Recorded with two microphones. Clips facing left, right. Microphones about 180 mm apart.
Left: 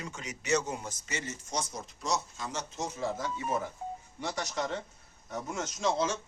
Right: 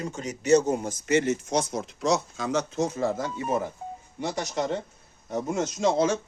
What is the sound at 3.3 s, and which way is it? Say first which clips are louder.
A man's voice: right 5 dB; 25° right (ahead or behind).